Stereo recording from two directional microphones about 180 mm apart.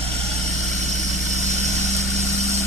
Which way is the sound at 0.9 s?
40° right (ahead or behind).